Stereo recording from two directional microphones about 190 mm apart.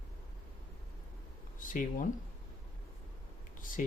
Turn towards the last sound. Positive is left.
turn(degrees=45)  # may be behind; listen again after turning